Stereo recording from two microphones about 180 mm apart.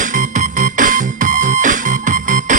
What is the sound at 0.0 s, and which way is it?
Music, 45° right (ahead or behind).